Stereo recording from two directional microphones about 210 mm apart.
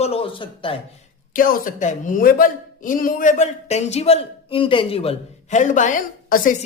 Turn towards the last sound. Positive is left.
turn(degrees=40)  # may be behind; listen again after turning